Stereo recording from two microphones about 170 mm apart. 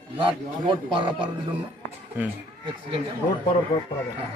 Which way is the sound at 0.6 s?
30° right (ahead or behind).